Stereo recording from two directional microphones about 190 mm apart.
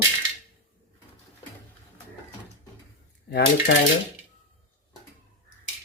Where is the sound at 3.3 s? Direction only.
60° left (ahead or behind).